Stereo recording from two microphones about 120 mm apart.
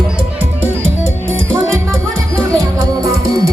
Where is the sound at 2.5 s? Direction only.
30° right (ahead or behind).